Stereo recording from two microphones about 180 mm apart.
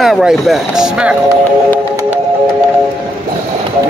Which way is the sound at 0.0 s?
Centre (ahead or behind).